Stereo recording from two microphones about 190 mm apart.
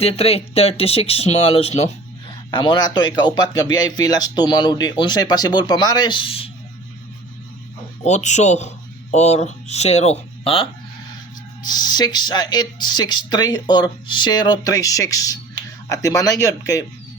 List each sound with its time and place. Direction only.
0.0 s speech: 30° left (ahead or behind)
8.0 s speech: 35° left (ahead or behind); by 16.8 s 15° left (ahead or behind)